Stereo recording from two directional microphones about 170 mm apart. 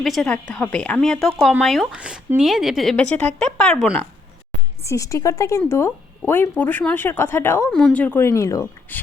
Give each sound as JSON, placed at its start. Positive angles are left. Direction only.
{"t": 0.0, "sound": "speech", "side_deg": 0}
{"t": 4.9, "sound": "speech", "side_deg": 20}